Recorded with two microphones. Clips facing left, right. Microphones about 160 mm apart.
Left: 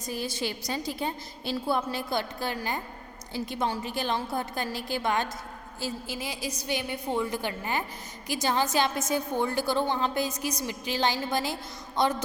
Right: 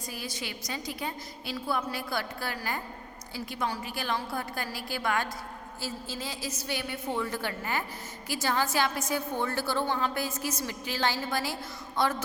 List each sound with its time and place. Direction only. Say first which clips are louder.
0.0 s a woman's voice: left 6 dB; 25° left (ahead or behind)